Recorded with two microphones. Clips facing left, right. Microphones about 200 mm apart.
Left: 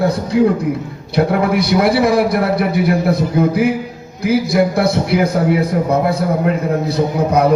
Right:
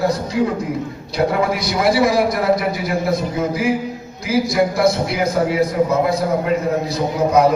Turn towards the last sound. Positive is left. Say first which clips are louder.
# left 1 dB
turn(degrees=60)  # may be behind; listen again after turning